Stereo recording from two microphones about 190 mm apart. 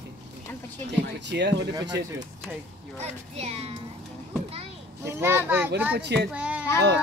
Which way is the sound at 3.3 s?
35° right (ahead or behind).